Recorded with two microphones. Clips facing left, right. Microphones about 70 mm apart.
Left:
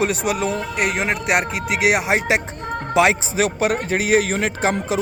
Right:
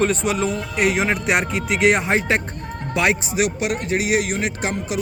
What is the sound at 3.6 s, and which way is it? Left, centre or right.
Speech, left.